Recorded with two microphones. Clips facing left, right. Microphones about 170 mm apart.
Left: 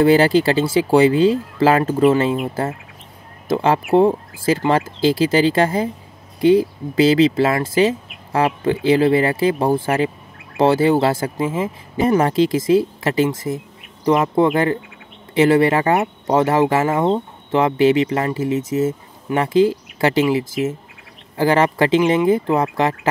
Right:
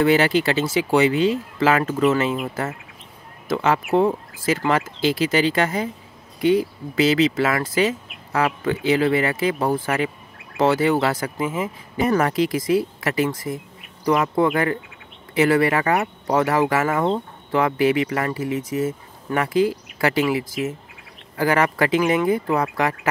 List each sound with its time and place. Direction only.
0.0 s speech: 35° left (ahead or behind)
10.3 s bird: centre (ahead or behind)
10.6 s speech: 30° left (ahead or behind)
21.4 s speech: 25° left (ahead or behind)